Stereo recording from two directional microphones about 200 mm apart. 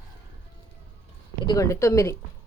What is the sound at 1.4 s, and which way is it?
Speech, 15° left (ahead or behind).